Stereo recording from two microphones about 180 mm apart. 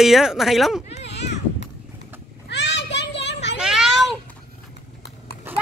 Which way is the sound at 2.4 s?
80° left.